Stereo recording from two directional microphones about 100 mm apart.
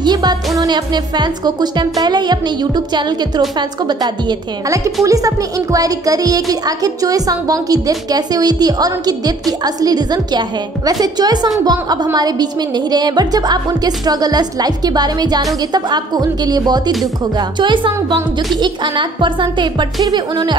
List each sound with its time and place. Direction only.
0.0 s music: 45° right (ahead or behind)
0.6 s speech: 45° right (ahead or behind)
5.0 s a woman's voice: 35° right (ahead or behind)